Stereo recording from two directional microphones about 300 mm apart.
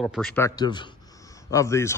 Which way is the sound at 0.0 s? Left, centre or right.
Centre.